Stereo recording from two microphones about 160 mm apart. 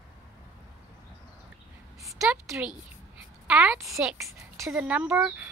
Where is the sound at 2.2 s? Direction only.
10° right (ahead or behind).